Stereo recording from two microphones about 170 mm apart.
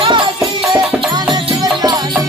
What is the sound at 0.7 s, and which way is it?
Music, centre (ahead or behind).